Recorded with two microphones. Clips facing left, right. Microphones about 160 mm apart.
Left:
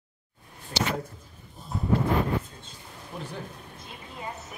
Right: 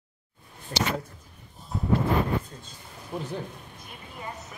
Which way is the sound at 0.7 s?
35° right (ahead or behind).